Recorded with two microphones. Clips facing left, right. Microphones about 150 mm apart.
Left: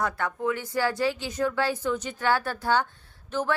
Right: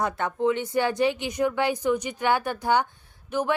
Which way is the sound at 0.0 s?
20° right (ahead or behind).